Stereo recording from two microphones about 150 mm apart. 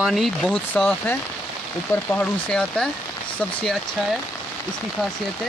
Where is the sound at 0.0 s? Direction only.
Centre (ahead or behind).